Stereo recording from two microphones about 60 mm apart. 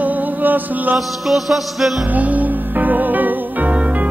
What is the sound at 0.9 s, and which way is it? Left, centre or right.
Music, centre.